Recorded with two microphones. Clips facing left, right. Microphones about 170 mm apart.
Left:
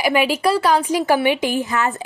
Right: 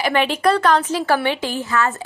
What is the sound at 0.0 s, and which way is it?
A woman's voice, 10° left (ahead or behind).